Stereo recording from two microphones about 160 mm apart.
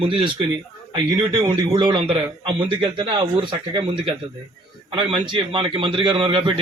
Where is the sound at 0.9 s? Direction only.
30° right (ahead or behind).